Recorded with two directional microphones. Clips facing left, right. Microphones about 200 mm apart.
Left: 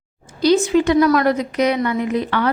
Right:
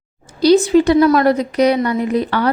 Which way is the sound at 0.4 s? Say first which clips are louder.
Right 4 dB; 35° right (ahead or behind).